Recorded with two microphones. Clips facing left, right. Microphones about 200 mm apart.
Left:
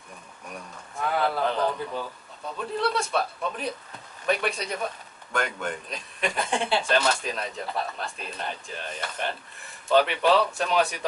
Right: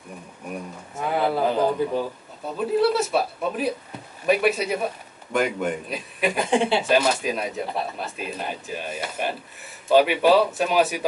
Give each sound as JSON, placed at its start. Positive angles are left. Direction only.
{"t": 0.9, "sound": "speech", "side_deg": -10}
{"t": 1.9, "sound": "speech", "side_deg": -25}
{"t": 2.5, "sound": "a man's voice", "side_deg": -5}